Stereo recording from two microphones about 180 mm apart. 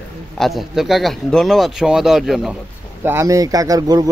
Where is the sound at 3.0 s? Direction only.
15° right (ahead or behind).